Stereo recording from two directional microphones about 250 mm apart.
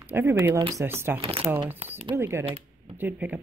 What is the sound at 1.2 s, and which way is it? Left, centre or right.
Speech, right.